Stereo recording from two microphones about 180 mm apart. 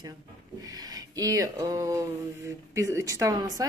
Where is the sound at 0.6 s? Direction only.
20° right (ahead or behind).